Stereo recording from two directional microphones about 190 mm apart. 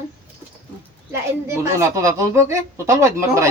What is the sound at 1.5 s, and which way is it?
Speech, 15° right (ahead or behind).